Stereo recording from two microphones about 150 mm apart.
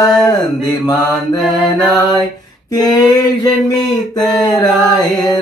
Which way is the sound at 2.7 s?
25° left (ahead or behind).